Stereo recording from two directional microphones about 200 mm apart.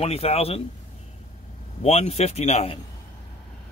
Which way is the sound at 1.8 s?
30° left (ahead or behind).